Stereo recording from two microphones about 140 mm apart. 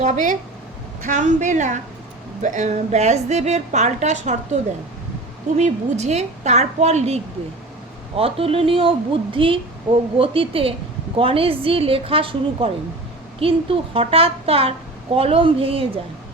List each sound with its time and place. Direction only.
0.0 s a woman's voice: 60° right (ahead or behind)
5.5 s a woman's voice: 55° right (ahead or behind)